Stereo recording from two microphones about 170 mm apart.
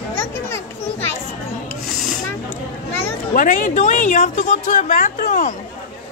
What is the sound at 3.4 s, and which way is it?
Speech, 50° left (ahead or behind).